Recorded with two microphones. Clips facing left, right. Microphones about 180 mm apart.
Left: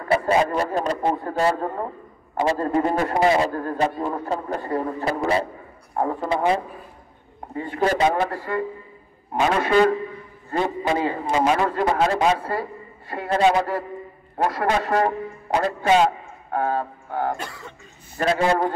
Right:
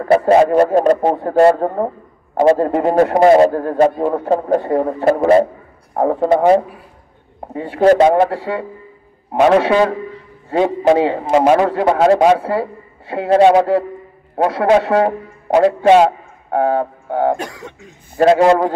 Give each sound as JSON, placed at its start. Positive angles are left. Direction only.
{"t": 0.5, "sound": "a man's voice", "side_deg": -70}
{"t": 3.1, "sound": "a man's voice", "side_deg": -50}
{"t": 6.3, "sound": "speech", "side_deg": -45}
{"t": 7.6, "sound": "a man's voice", "side_deg": -75}
{"t": 11.4, "sound": "a man's voice", "side_deg": -60}
{"t": 18.1, "sound": "a man's voice", "side_deg": -65}